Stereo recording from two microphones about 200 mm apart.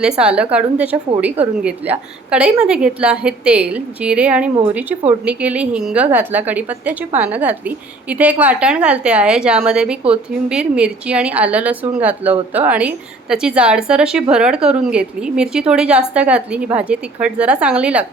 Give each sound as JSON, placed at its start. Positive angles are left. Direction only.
{"t": 0.0, "sound": "a woman's voice", "side_deg": -5}